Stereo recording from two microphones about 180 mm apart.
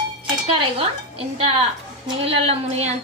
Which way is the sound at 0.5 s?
30° right (ahead or behind).